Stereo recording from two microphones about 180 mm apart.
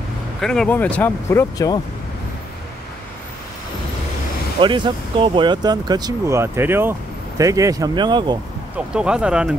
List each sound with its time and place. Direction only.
0.4 s speech: 5° left (ahead or behind)
4.6 s speech: 25° right (ahead or behind)
8.7 s speech: 5° right (ahead or behind)